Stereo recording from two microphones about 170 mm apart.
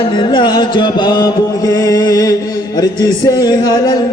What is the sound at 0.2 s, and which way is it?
Music, 25° left (ahead or behind).